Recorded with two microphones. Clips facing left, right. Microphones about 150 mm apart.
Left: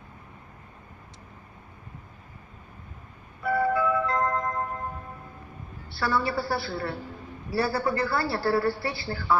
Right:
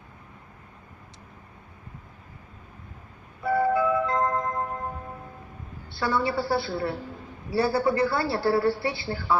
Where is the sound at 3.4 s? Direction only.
20° right (ahead or behind).